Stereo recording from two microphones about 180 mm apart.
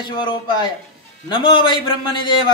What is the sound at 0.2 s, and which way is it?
A man's voice, 25° left (ahead or behind).